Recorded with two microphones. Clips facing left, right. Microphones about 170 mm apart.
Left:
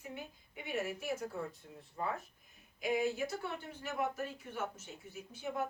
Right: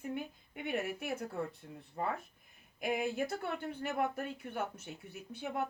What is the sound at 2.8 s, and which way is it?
Speech, 55° right (ahead or behind).